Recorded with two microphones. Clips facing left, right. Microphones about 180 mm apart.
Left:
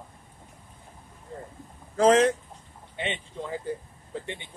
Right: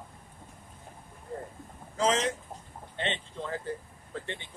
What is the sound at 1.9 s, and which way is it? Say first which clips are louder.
Speech: left 8 dB; 55° left (ahead or behind).